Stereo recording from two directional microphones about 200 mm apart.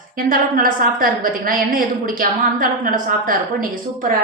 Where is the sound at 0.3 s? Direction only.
45° right (ahead or behind).